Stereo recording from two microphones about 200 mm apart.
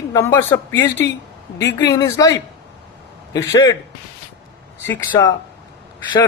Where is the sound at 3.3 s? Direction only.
20° left (ahead or behind).